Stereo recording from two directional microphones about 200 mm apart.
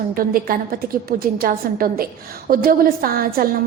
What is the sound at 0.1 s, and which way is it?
A woman's voice, 45° right (ahead or behind).